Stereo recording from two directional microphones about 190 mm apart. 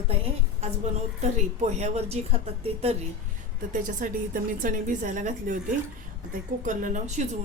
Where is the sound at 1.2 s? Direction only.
35° right (ahead or behind).